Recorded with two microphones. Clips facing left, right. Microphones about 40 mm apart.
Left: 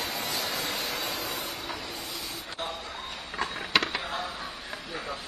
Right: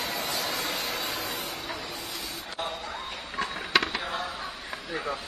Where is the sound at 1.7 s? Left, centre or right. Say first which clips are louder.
Right 1 dB; centre.